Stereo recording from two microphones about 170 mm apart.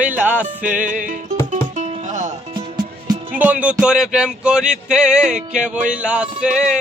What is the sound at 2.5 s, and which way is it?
Music, 25° right (ahead or behind).